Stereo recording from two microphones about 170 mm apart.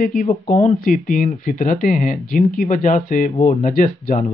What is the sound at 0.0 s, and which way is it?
Speech, 55° left (ahead or behind).